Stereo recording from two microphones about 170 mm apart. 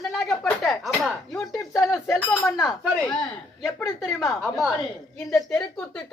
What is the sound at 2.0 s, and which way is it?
Chink, 10° left (ahead or behind).